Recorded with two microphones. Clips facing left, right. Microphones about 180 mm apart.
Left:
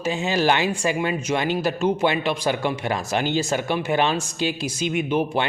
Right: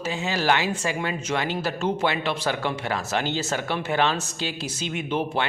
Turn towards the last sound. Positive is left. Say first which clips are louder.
# left 4 dB
turn(degrees=15)  # may be behind; listen again after turning